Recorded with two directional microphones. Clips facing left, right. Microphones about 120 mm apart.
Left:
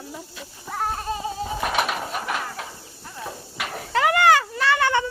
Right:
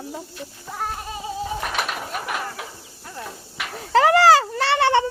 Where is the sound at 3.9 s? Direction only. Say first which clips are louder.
Right 4 dB; 35° right (ahead or behind).